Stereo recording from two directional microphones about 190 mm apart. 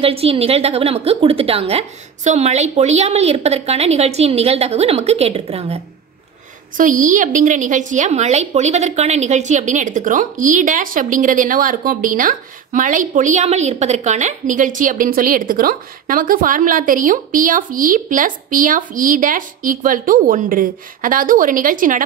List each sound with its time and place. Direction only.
0.0 s a woman's voice: 30° right (ahead or behind)
6.8 s a woman's voice: 45° right (ahead or behind)